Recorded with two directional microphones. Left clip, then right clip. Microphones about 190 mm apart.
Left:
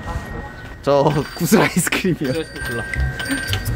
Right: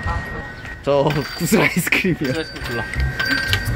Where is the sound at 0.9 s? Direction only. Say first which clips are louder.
Left 2 dB; 20° left (ahead or behind).